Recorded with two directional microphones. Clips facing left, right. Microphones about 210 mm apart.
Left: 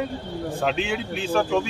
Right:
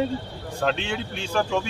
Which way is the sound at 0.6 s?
5° left (ahead or behind).